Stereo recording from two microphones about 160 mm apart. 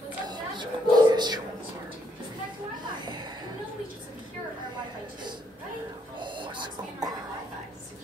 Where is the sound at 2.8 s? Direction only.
30° right (ahead or behind).